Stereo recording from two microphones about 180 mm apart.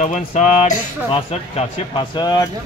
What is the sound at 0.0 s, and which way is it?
Speech, 40° left (ahead or behind).